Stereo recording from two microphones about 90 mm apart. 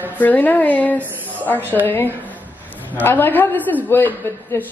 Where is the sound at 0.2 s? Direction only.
20° left (ahead or behind).